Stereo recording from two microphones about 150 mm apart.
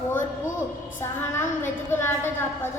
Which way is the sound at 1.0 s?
15° left (ahead or behind).